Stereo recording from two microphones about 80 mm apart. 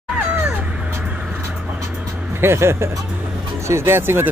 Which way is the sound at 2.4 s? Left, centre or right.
Right.